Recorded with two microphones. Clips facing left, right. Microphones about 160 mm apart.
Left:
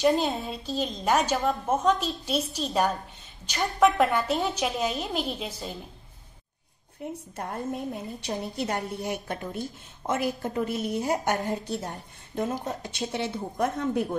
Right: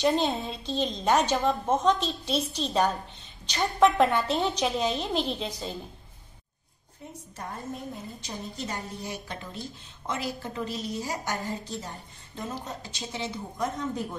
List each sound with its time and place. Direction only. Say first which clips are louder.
0.0 s a woman's voice: left 1 dB; 5° left (ahead or behind)
7.0 s a woman's voice: left 5 dB; 65° left (ahead or behind)